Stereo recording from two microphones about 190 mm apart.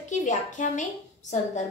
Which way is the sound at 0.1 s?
40° left (ahead or behind).